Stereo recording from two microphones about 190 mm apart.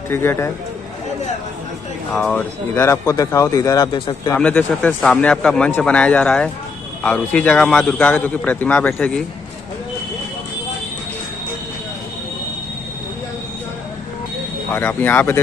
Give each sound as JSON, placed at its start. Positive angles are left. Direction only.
{"t": 0.1, "sound": "speech", "side_deg": 10}
{"t": 2.1, "sound": "speech", "side_deg": 10}
{"t": 4.4, "sound": "speech", "side_deg": 10}
{"t": 14.7, "sound": "speech", "side_deg": 10}